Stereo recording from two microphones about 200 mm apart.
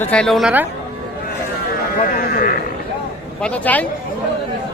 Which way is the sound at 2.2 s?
45° left (ahead or behind).